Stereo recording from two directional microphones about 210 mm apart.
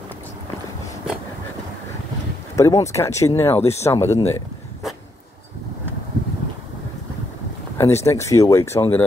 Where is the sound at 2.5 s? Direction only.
15° left (ahead or behind).